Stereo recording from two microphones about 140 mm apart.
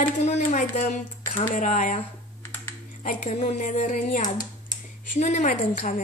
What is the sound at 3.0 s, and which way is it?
A woman's voice, 60° left (ahead or behind).